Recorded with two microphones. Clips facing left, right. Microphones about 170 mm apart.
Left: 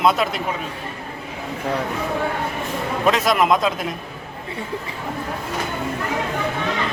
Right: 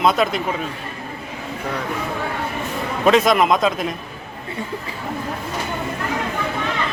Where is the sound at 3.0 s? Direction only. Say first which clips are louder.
Right 4 dB; centre (ahead or behind).